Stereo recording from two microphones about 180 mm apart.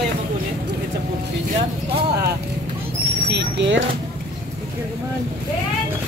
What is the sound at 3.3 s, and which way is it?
Speech, 80° right.